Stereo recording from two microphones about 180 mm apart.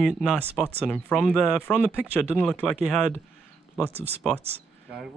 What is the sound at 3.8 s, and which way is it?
Speech, 35° right (ahead or behind).